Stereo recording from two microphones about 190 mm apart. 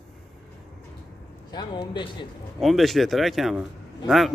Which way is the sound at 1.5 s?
25° left (ahead or behind).